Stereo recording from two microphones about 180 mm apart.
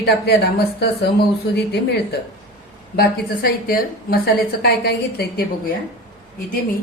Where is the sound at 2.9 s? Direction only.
55° left (ahead or behind).